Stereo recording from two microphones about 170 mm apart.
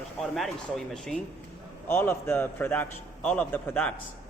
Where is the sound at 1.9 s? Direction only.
15° left (ahead or behind).